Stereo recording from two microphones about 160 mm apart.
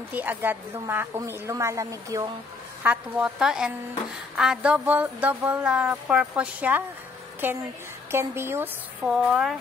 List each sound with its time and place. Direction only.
0.1 s speech: 10° right (ahead or behind)
2.8 s a woman's voice: 10° right (ahead or behind)
9.0 s a woman's voice: 5° right (ahead or behind)